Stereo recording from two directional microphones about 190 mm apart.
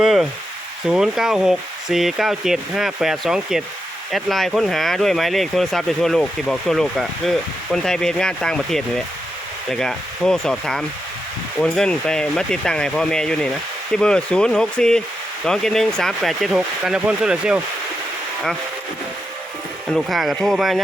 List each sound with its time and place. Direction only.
0.0 s speech: centre (ahead or behind)
19.9 s speech: centre (ahead or behind)